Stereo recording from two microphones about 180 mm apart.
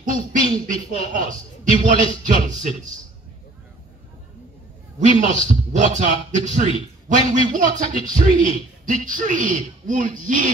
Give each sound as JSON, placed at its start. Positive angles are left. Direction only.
{"t": 0.0, "sound": "a sound", "side_deg": -45}
{"t": 1.9, "sound": "a man's voice", "side_deg": -45}
{"t": 5.2, "sound": "a man's voice", "side_deg": -40}